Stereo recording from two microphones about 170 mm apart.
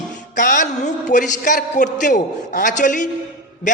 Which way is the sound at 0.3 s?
50° left (ahead or behind).